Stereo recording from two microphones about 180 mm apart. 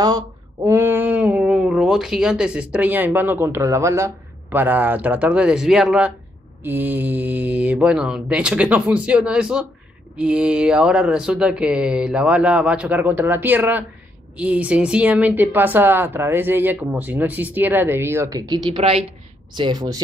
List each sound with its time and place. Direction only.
0.7 s a woman's voice: 10° right (ahead or behind)
18.8 s a woman's voice: 35° right (ahead or behind)